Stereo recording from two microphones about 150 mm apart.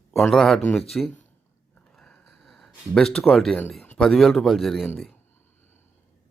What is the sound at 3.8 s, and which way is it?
Speech, 5° left (ahead or behind).